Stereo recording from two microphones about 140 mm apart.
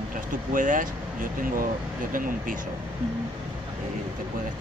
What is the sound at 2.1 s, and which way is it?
Speech, 80° right.